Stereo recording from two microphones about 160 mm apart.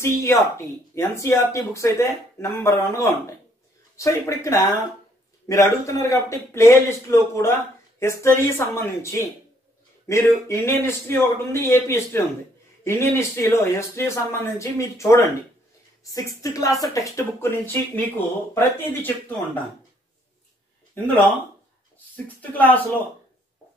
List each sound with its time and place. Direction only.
0.0 s a woman's voice: 15° left (ahead or behind)
22.1 s speech: 10° left (ahead or behind)